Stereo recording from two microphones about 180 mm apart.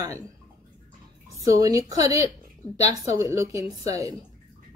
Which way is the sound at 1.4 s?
20° right (ahead or behind).